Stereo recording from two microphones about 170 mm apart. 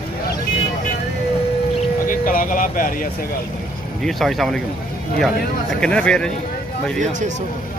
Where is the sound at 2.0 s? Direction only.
55° left (ahead or behind).